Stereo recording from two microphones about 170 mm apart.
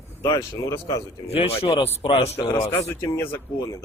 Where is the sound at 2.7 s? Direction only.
15° left (ahead or behind).